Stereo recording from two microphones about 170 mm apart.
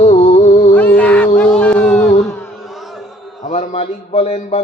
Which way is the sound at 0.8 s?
10° left (ahead or behind).